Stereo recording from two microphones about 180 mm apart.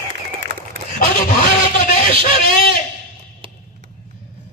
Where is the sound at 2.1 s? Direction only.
50° left (ahead or behind).